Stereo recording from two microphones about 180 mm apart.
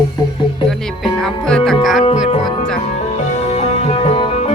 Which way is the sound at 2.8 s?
35° left (ahead or behind).